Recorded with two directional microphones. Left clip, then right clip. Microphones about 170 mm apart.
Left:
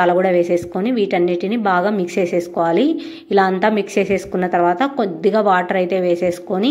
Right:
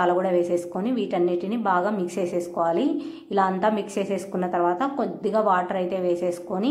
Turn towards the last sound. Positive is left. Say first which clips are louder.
# left 7 dB
turn(degrees=20)  # may be behind; listen again after turning